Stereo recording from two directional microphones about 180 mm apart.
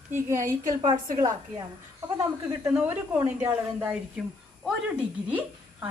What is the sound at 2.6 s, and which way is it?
A woman's voice, 10° right (ahead or behind).